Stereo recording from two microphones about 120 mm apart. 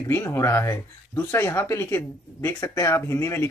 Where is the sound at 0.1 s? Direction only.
20° left (ahead or behind).